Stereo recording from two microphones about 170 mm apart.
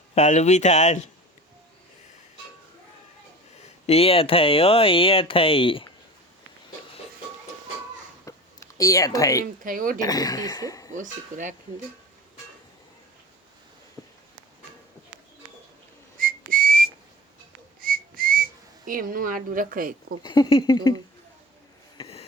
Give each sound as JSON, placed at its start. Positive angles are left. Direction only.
{"t": 0.1, "sound": "speech", "side_deg": 40}
{"t": 3.8, "sound": "speech", "side_deg": 35}
{"t": 8.2, "sound": "a sound", "side_deg": 20}
{"t": 9.6, "sound": "speech", "side_deg": -55}
{"t": 10.0, "sound": "speech", "side_deg": 20}
{"t": 10.9, "sound": "speech", "side_deg": -50}
{"t": 16.1, "sound": "whistling", "side_deg": -55}
{"t": 18.9, "sound": "speech", "side_deg": -55}
{"t": 20.2, "sound": "speech", "side_deg": 25}
{"t": 21.9, "sound": "a sound", "side_deg": 30}